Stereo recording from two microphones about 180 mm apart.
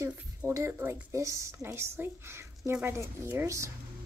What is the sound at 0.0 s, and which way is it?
A woman's voice, 15° right (ahead or behind).